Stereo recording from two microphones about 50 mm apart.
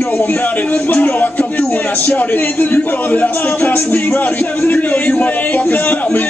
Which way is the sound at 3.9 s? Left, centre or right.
Left.